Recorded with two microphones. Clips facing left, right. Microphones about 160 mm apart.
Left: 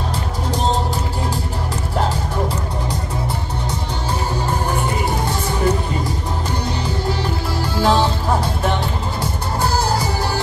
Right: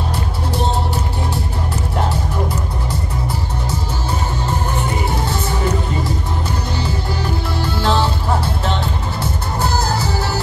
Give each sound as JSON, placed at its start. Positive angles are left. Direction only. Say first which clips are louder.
{"t": 7.8, "sound": "music", "louder": "left 2 dB", "side_deg": 10}